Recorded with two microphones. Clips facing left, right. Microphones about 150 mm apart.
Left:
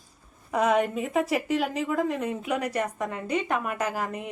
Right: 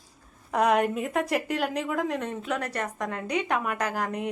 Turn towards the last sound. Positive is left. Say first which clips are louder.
# even
turn(degrees=5)  # may be behind; listen again after turning